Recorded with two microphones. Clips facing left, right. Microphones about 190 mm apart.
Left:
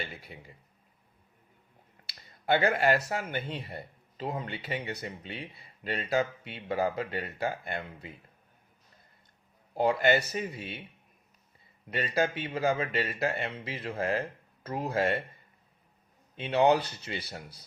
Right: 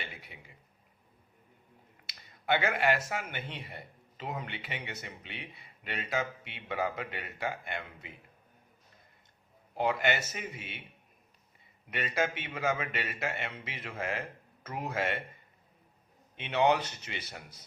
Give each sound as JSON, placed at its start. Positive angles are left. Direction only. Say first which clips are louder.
{"t": 2.0, "sound": "a man's voice", "louder": "left 3 dB", "side_deg": 40}
{"t": 9.7, "sound": "a man's voice", "louder": "left 5 dB", "side_deg": 35}
{"t": 11.9, "sound": "a man's voice", "louder": "left 3 dB", "side_deg": 35}
{"t": 16.3, "sound": "a man's voice", "louder": "left 3 dB", "side_deg": 35}